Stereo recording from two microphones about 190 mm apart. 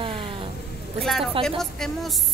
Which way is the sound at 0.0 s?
30° right (ahead or behind).